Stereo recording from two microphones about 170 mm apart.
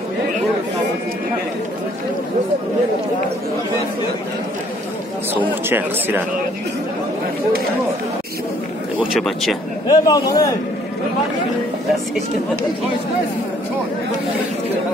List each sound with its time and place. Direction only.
5.3 s speech: 15° right (ahead or behind)
9.0 s speech: centre (ahead or behind)
9.8 s a man's voice: 20° left (ahead or behind)